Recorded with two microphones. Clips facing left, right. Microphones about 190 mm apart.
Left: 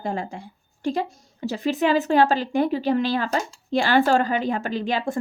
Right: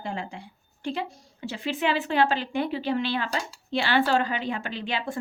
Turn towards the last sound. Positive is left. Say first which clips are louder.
# left 6 dB
turn(degrees=45)  # may be behind; listen again after turning